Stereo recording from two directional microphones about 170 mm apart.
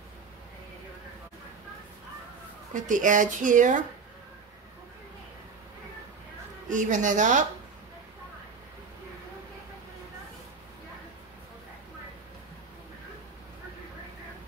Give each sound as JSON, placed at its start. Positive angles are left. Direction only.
{"t": 2.7, "sound": "speech", "side_deg": -50}
{"t": 6.7, "sound": "speech", "side_deg": -50}